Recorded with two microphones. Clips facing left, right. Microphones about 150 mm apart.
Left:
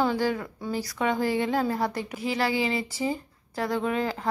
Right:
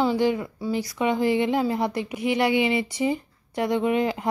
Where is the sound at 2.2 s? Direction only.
35° left (ahead or behind).